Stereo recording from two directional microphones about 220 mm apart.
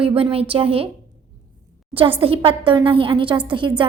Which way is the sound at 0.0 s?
25° right (ahead or behind).